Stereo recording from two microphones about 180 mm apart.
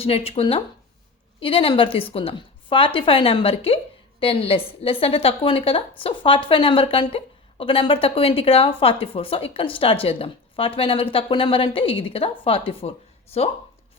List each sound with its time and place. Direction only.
0.0 s speech: 30° left (ahead or behind)